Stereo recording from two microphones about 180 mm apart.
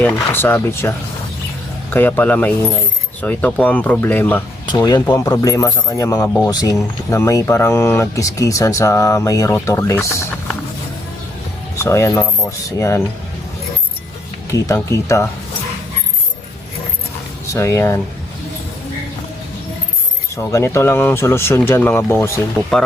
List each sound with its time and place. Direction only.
0.0 s speech: 10° left (ahead or behind)
4.7 s speech: 25° left (ahead or behind)
11.8 s speech: 15° left (ahead or behind)
14.5 s speech: 15° left (ahead or behind)
17.5 s speech: 15° left (ahead or behind)
20.3 s speech: 15° left (ahead or behind)